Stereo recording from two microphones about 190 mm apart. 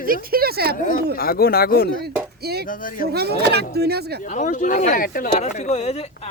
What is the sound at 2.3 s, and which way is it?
Music, 55° right (ahead or behind).